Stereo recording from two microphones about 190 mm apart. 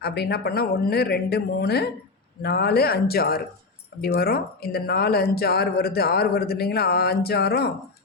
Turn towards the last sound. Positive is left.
turn(degrees=55)  # may be behind; listen again after turning